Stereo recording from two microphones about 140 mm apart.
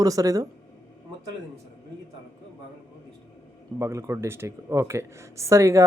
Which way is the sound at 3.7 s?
20° right (ahead or behind).